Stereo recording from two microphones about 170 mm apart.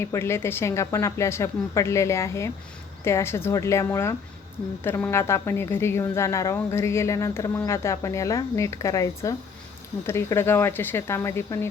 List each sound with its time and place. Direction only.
0.0 s a woman's voice: 15° left (ahead or behind)